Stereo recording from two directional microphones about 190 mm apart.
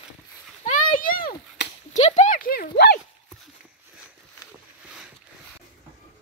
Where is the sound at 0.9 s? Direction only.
50° left (ahead or behind).